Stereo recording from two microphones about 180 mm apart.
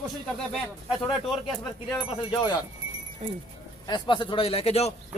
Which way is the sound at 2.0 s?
25° left (ahead or behind).